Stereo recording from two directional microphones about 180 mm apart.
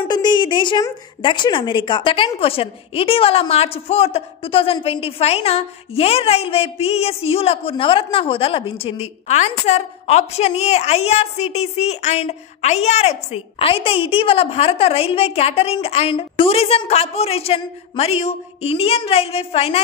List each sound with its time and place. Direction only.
0.1 s a woman's voice: 25° left (ahead or behind)